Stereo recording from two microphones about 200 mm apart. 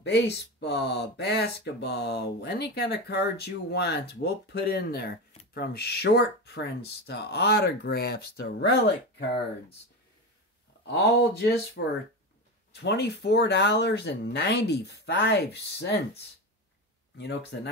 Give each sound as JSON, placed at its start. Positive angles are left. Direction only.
{"t": 0.0, "sound": "speech", "side_deg": 60}
{"t": 10.9, "sound": "speech", "side_deg": 55}
{"t": 17.2, "sound": "speech", "side_deg": 55}